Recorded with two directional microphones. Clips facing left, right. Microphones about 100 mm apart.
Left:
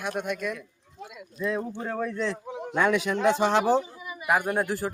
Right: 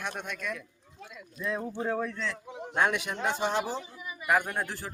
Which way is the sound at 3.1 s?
90° left.